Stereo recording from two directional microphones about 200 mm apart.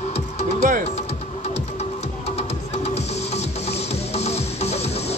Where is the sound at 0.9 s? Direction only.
30° left (ahead or behind).